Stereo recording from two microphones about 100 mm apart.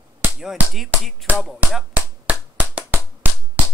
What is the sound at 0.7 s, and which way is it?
Speech, centre (ahead or behind).